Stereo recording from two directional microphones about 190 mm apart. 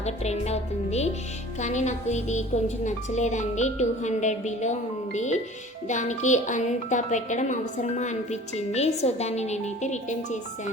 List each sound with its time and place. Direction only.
0.0 s speech: 35° left (ahead or behind)